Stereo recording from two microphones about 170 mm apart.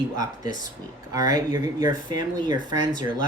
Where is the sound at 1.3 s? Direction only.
20° right (ahead or behind).